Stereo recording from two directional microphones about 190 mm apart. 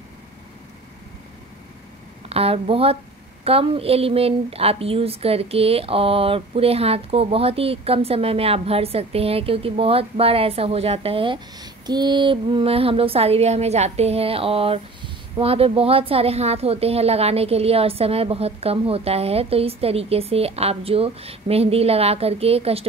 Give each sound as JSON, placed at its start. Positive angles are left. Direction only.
{"t": 2.2, "sound": "a woman's voice", "side_deg": -30}